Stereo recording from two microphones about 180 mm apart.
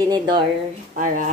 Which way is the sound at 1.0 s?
45° right (ahead or behind).